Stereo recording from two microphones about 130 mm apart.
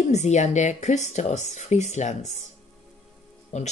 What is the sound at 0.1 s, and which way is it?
Speech, 60° left (ahead or behind).